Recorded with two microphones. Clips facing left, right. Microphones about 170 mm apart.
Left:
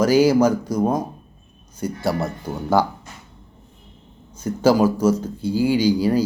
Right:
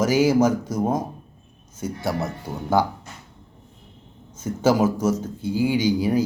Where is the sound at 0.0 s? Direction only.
20° right (ahead or behind).